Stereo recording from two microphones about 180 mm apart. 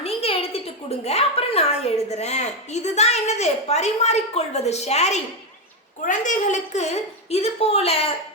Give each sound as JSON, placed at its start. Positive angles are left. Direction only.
{"t": 0.0, "sound": "a woman's voice", "side_deg": 35}